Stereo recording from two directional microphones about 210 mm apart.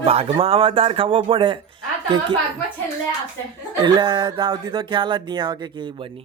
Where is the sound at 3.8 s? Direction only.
20° right (ahead or behind).